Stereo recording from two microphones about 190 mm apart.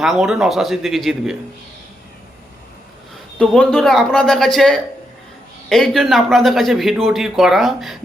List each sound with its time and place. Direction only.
0.0 s speech: centre (ahead or behind)
3.3 s speech: 5° left (ahead or behind)